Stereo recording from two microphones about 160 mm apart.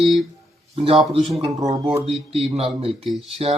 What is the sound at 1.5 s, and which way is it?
Speech, 20° right (ahead or behind).